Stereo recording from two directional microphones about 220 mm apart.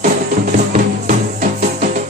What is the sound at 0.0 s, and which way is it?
Music, 35° right (ahead or behind).